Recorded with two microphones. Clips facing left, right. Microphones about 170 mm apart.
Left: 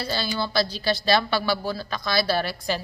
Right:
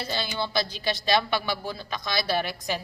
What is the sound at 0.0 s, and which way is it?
A woman's voice, 20° right (ahead or behind).